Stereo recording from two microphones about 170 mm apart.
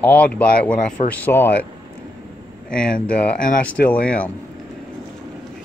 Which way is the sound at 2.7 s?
5° left (ahead or behind).